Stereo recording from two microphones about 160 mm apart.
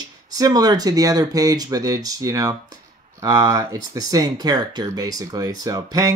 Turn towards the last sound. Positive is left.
turn(degrees=-25)  # may be behind; listen again after turning